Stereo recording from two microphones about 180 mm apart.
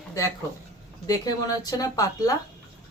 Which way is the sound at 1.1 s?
20° left (ahead or behind).